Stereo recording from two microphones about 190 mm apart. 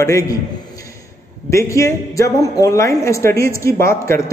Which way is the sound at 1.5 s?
15° left (ahead or behind).